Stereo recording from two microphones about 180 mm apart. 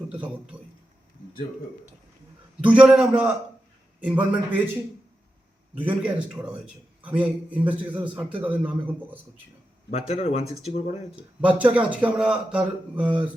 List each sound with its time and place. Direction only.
0.1 s a man's voice: 10° right (ahead or behind)
2.6 s a man's voice: 5° right (ahead or behind)
5.7 s a man's voice: 10° right (ahead or behind)
9.9 s speech: 35° left (ahead or behind)
11.3 s a man's voice: 10° right (ahead or behind)